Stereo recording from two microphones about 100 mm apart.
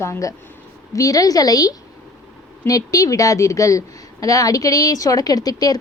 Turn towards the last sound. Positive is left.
turn(degrees=40)  # may be behind; listen again after turning